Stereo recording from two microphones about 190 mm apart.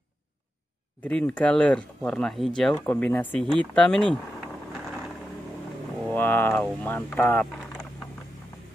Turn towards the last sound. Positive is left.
turn(degrees=10)  # may be behind; listen again after turning